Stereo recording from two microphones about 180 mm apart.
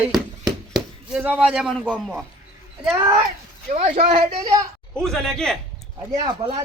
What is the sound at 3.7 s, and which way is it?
Speech, 30° right (ahead or behind).